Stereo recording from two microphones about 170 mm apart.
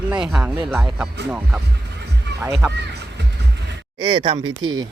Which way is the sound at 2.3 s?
80° right.